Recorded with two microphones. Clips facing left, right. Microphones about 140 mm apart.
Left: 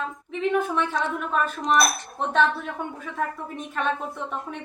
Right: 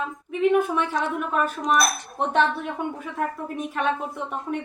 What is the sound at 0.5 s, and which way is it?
A woman's voice, 10° right (ahead or behind).